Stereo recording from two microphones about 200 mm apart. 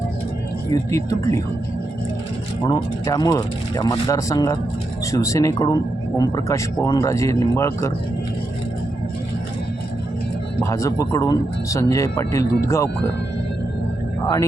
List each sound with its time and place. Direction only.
0.7 s speech: 15° left (ahead or behind)
2.6 s speech: 20° left (ahead or behind)
10.6 s speech: 15° left (ahead or behind)